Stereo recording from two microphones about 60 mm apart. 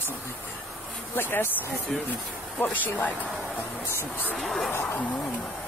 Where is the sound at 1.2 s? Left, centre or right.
Left.